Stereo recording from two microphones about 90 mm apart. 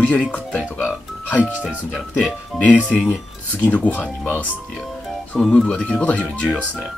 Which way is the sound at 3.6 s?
20° left (ahead or behind).